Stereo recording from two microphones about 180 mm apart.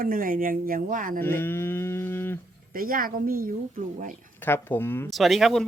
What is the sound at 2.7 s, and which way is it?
Speech, 55° right (ahead or behind).